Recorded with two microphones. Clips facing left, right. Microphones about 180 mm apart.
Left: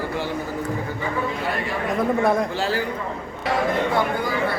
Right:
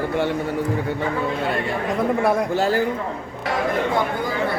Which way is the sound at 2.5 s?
45° right (ahead or behind).